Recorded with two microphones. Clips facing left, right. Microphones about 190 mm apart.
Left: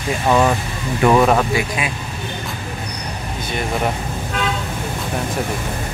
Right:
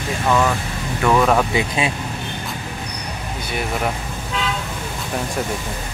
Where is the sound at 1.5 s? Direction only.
25° right (ahead or behind).